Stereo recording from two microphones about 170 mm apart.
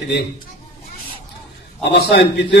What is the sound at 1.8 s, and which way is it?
Speech, 70° left (ahead or behind).